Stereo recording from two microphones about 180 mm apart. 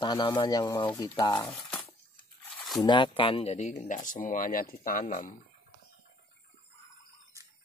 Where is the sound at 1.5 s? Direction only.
10° left (ahead or behind).